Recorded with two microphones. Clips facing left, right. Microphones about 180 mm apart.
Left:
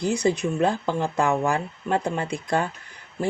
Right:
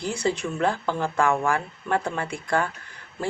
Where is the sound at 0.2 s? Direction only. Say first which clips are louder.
Left 3 dB; 15° left (ahead or behind).